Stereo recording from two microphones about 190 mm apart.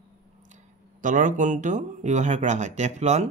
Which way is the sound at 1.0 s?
40° right (ahead or behind).